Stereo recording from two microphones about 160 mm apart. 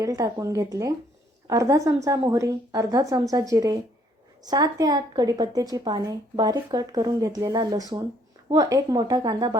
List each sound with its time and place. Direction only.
0.0 s a woman's voice: 20° right (ahead or behind)